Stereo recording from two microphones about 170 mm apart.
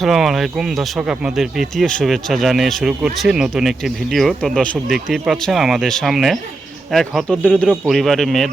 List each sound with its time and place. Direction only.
0.0 s speech: centre (ahead or behind)